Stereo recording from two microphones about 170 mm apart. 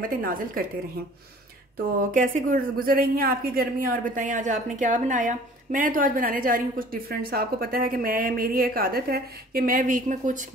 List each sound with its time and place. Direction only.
0.0 s speech: 55° right (ahead or behind)
2.1 s speech: 50° right (ahead or behind)